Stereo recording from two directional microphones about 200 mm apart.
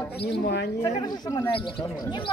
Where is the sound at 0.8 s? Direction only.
15° left (ahead or behind).